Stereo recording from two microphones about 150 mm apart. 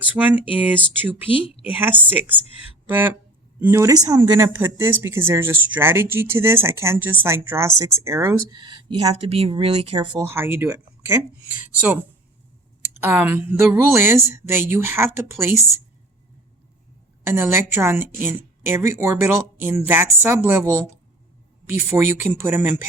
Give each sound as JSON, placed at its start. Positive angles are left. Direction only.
{"t": 0.2, "sound": "speech", "side_deg": -10}
{"t": 2.8, "sound": "music", "side_deg": -15}
{"t": 3.6, "sound": "speech", "side_deg": -20}
{"t": 10.2, "sound": "speech", "side_deg": -15}
{"t": 17.2, "sound": "speech", "side_deg": -15}